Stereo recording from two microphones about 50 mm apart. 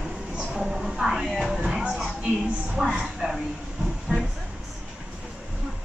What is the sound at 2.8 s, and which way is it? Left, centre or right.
Speech, centre.